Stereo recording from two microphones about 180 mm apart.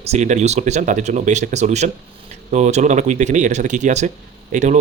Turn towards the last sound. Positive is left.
turn(degrees=-45)  # may be behind; listen again after turning